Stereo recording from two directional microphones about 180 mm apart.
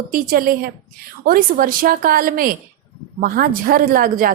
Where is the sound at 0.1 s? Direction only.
50° right (ahead or behind).